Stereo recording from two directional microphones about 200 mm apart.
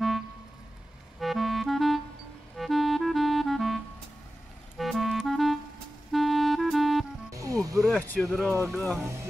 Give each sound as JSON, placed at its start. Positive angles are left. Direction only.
{"t": 1.2, "sound": "clarinet", "side_deg": 0}
{"t": 2.5, "sound": "music", "side_deg": 0}
{"t": 4.7, "sound": "clarinet", "side_deg": 0}
{"t": 7.2, "sound": "music", "side_deg": -15}
{"t": 7.8, "sound": "speech", "side_deg": 5}